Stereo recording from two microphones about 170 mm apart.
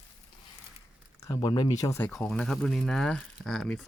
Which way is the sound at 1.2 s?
20° left (ahead or behind).